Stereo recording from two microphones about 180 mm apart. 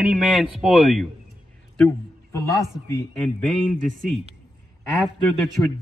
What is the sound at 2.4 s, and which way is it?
Speech, 15° left (ahead or behind).